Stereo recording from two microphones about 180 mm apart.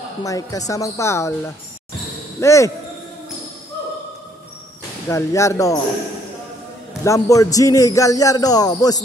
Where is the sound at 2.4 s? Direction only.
15° left (ahead or behind).